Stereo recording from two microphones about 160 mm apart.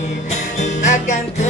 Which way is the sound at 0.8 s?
50° left (ahead or behind).